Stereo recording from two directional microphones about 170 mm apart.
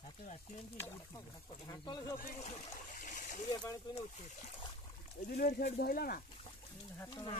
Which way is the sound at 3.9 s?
25° left (ahead or behind).